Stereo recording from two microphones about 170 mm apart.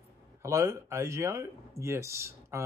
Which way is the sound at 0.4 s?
15° right (ahead or behind).